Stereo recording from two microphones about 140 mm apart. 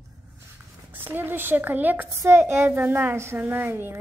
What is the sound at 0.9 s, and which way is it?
A woman's voice, 15° right (ahead or behind).